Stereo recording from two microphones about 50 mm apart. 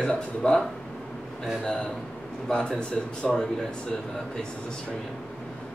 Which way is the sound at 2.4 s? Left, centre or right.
Centre.